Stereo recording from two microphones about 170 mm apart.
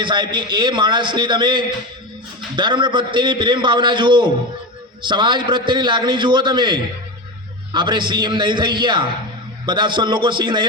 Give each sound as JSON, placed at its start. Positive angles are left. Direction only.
{"t": 0.0, "sound": "a man's voice", "side_deg": -25}